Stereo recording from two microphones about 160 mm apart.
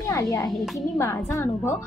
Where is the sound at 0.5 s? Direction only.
Centre (ahead or behind).